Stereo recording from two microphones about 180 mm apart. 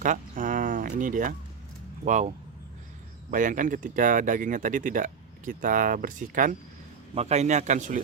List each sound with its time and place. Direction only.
0.0 s a sound: 45° right (ahead or behind)
2.0 s a man's voice: 40° right (ahead or behind)
3.3 s a man's voice: 45° right (ahead or behind)